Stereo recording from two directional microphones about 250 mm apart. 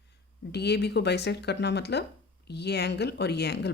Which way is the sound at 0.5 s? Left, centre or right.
Left.